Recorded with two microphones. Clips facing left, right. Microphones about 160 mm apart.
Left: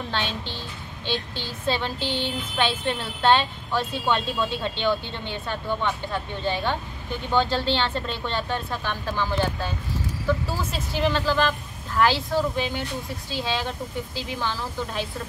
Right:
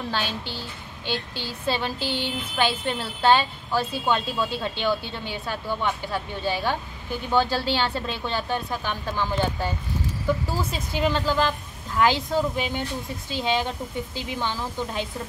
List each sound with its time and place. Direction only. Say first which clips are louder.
0.1 s a woman's voice: even; 10° right (ahead or behind)